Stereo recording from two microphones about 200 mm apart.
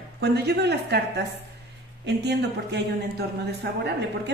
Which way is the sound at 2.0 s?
55° right (ahead or behind).